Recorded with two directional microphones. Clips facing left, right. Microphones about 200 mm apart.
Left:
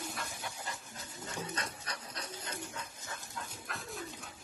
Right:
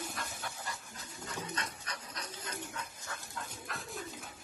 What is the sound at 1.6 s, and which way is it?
Dog, 30° left (ahead or behind).